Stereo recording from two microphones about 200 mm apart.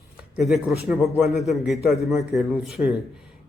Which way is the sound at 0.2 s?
Centre (ahead or behind).